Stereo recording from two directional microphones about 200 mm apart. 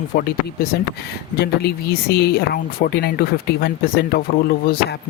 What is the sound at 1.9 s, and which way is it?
Speech, 50° left (ahead or behind).